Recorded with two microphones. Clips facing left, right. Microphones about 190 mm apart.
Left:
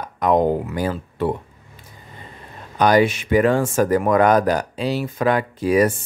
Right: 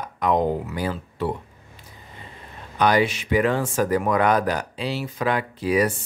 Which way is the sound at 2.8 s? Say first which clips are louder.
Left 4 dB; 45° left (ahead or behind).